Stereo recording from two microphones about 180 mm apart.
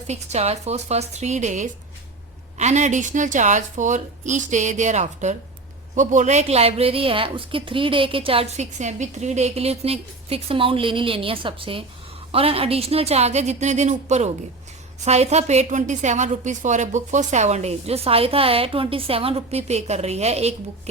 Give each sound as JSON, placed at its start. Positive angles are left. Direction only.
{"t": 0.1, "sound": "a woman's voice", "side_deg": -40}